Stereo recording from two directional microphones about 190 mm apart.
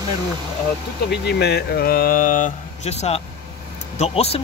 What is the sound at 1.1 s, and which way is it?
Speech, 60° left (ahead or behind).